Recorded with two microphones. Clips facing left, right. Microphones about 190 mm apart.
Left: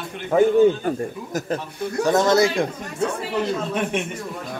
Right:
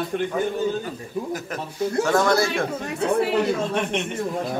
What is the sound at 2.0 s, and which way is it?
Speech, 20° left (ahead or behind).